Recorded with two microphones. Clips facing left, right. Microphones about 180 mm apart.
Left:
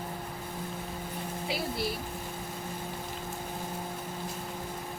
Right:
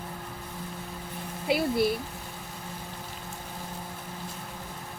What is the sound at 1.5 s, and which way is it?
Speech, 55° right (ahead or behind).